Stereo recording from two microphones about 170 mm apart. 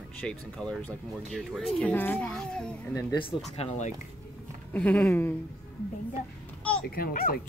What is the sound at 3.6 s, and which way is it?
Speech, 45° left (ahead or behind).